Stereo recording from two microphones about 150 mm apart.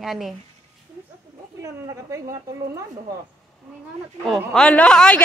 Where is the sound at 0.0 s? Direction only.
Centre (ahead or behind).